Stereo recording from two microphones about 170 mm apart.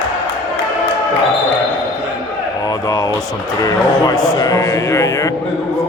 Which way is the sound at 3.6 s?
20° left (ahead or behind).